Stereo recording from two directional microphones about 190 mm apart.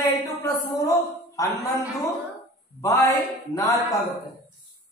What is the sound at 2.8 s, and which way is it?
A man's voice, 15° left (ahead or behind).